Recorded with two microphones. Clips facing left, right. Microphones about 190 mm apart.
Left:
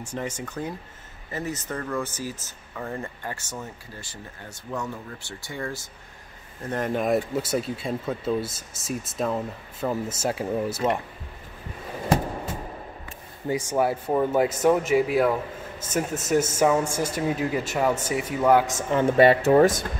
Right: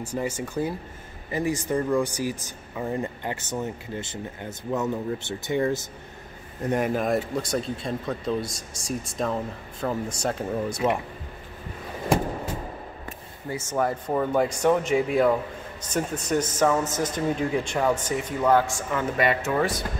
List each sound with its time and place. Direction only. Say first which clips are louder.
0.0 s speech: right 3 dB; 10° right (ahead or behind)
6.9 s speech: left 1 dB; centre (ahead or behind)
13.5 s speech: left 3 dB; 15° left (ahead or behind); by 19.8 s 40° left (ahead or behind)